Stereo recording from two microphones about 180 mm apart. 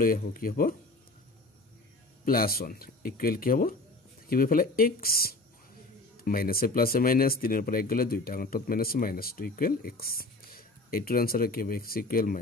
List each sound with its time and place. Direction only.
0.0 s speech: 50° left (ahead or behind)
2.2 s speech: 55° left (ahead or behind)